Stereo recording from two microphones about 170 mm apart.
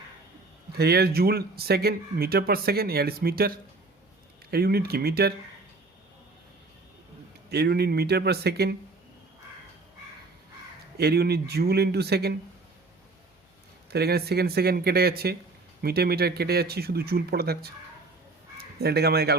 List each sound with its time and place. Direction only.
0.8 s speech: 70° right (ahead or behind)
4.5 s speech: 65° right (ahead or behind)
7.5 s speech: 70° right (ahead or behind)
10.9 s speech: 70° right (ahead or behind)
13.9 s speech: 70° right (ahead or behind)